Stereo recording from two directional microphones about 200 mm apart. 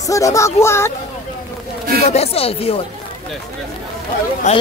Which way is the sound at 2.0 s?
30° left (ahead or behind).